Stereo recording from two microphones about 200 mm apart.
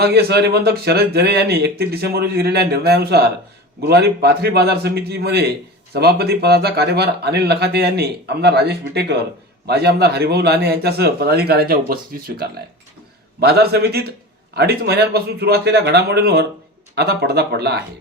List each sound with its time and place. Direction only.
0.0 s speech: 55° right (ahead or behind)